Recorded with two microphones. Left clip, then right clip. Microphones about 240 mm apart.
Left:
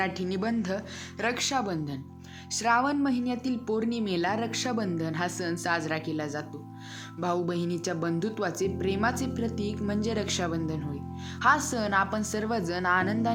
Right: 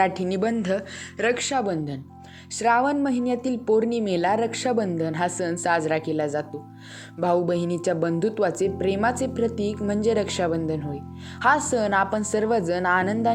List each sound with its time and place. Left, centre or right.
0.0 s a woman's voice: centre